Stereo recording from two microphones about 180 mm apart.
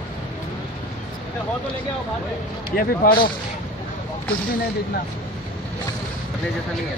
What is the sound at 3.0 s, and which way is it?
Speech, 55° left (ahead or behind).